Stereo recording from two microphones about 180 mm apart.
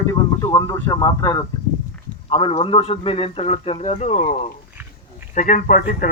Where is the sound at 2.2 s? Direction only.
30° left (ahead or behind); by 6.1 s 45° left (ahead or behind).